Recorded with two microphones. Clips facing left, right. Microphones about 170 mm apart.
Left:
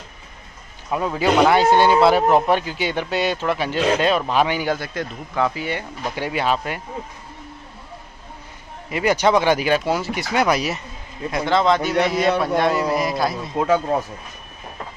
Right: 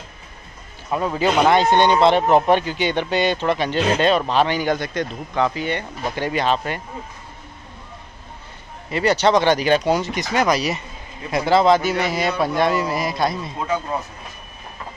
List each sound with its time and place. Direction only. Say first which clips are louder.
0.8 s a man's voice: even; centre (ahead or behind)
8.9 s speech: right 1 dB; 10° left (ahead or behind)
11.2 s a man's voice: right 2 dB; 5° right (ahead or behind)
13.6 s speech: left 8 dB; 60° left (ahead or behind)